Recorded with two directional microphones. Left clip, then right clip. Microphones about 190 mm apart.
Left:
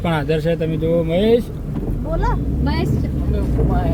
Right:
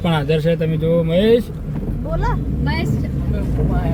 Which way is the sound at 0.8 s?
55° right (ahead or behind).